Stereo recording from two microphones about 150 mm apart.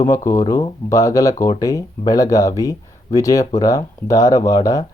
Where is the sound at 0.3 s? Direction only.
20° left (ahead or behind).